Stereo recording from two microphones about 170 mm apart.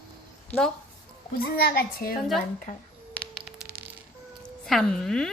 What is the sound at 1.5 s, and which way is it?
Speech, 65° left (ahead or behind).